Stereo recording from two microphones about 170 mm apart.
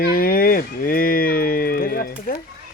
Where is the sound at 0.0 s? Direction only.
60° left (ahead or behind).